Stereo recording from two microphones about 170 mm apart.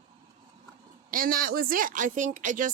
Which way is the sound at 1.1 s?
55° right (ahead or behind).